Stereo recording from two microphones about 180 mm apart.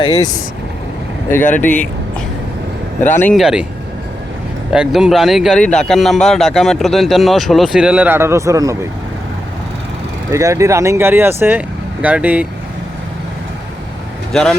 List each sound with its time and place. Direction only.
0.0 s speech: 20° left (ahead or behind)
1.4 s speech: 45° left (ahead or behind)
1.6 s a sound: 10° left (ahead or behind)
3.0 s speech: 10° left (ahead or behind)
3.3 s speech: 5° right (ahead or behind)
4.7 s speech: 5° right (ahead or behind)
10.3 s speech: 15° right (ahead or behind)
14.3 s speech: 5° left (ahead or behind)